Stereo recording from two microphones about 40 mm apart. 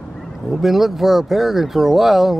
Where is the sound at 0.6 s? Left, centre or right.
Centre.